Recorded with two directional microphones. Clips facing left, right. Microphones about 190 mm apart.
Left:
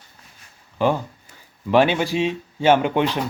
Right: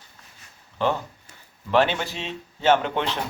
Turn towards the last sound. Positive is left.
turn(degrees=15)  # may be behind; listen again after turning